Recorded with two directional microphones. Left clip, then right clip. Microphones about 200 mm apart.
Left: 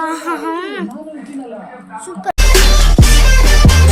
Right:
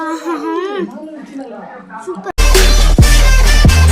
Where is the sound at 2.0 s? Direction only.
60° left (ahead or behind).